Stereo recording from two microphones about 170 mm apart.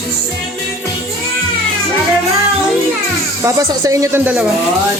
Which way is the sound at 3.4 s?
15° right (ahead or behind).